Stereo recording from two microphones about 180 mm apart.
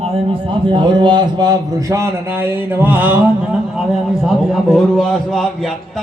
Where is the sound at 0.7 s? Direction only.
25° right (ahead or behind); by 3.2 s 10° right (ahead or behind).